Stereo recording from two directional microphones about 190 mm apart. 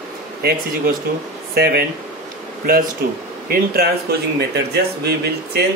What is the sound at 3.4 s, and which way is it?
A man's voice, 55° right (ahead or behind).